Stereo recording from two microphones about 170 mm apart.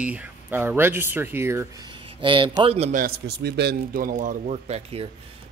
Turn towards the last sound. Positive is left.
turn(degrees=-35)  # may be behind; listen again after turning